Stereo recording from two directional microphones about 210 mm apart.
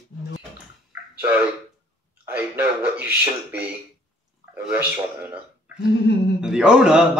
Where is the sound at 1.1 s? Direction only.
5° right (ahead or behind).